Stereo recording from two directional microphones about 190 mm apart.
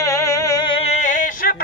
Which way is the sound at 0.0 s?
15° left (ahead or behind).